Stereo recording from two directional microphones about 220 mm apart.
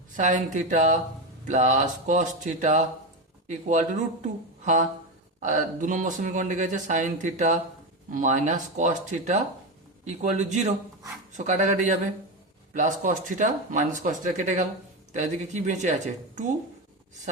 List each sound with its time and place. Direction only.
0.2 s speech: 35° right (ahead or behind)